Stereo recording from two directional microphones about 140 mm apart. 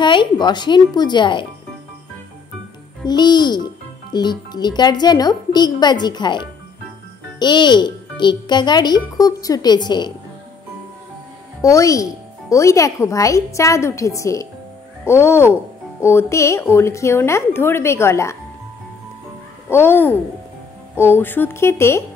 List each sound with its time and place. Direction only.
0.0 s a child's voice: 35° left (ahead or behind)
3.1 s a child's voice: 30° left (ahead or behind)
11.6 s speech: 25° left (ahead or behind)
19.7 s speech: 15° left (ahead or behind)